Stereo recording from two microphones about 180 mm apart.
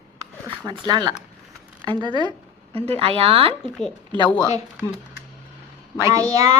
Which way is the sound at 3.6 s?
5° left (ahead or behind).